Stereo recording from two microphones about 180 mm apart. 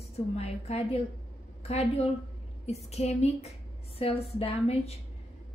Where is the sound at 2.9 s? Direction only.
35° left (ahead or behind).